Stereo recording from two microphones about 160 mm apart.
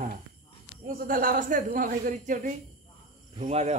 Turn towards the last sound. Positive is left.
turn(degrees=-45)  # may be behind; listen again after turning